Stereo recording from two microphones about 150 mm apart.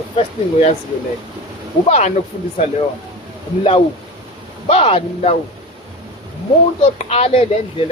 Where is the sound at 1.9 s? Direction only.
50° left (ahead or behind).